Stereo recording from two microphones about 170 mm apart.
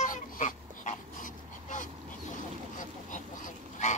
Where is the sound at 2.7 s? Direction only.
50° left (ahead or behind).